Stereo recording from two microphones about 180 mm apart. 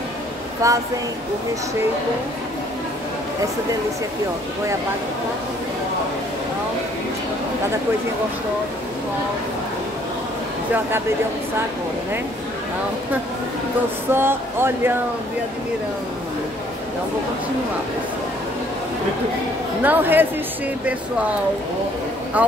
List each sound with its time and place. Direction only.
0.6 s speech: 20° right (ahead or behind)
14.1 s speech: 10° right (ahead or behind)
19.8 s speech: 10° right (ahead or behind)
22.4 s speech: 10° right (ahead or behind)